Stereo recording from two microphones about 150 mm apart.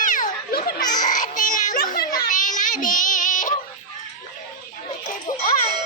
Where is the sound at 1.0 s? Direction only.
60° left (ahead or behind).